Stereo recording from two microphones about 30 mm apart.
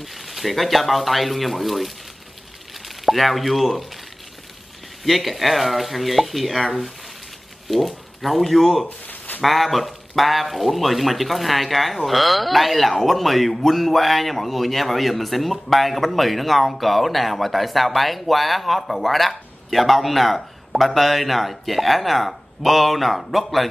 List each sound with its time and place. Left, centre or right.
0.0 s speech: centre
5.0 s speech: centre
8.8 s a sound: left
9.4 s speech: centre